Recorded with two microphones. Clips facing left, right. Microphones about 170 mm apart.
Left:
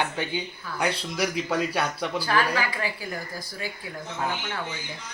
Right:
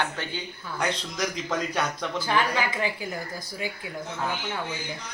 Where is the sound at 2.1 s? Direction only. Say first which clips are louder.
Even; 20° right (ahead or behind).